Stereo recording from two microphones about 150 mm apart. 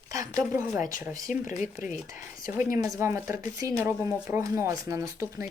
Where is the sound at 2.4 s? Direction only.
15° right (ahead or behind).